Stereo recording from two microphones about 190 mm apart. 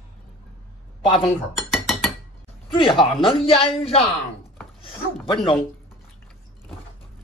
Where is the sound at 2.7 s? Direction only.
25° left (ahead or behind).